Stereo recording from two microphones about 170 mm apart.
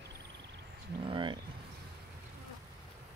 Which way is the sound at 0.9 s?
30° right (ahead or behind).